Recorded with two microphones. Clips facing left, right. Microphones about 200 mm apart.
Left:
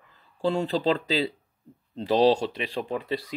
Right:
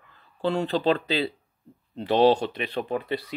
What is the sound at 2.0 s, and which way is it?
Speech, 35° left (ahead or behind).